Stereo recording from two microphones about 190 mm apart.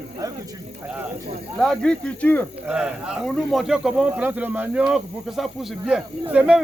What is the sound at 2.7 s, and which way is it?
Speech, 5° right (ahead or behind).